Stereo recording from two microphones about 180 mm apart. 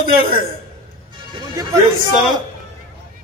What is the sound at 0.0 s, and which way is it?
Speech, 55° right (ahead or behind).